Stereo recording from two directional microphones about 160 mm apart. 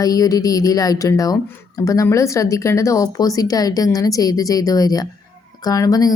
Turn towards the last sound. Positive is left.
turn(degrees=25)  # may be behind; listen again after turning